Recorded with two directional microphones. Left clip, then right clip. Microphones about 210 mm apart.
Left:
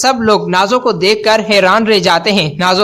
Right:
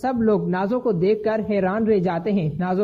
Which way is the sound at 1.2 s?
5° left (ahead or behind).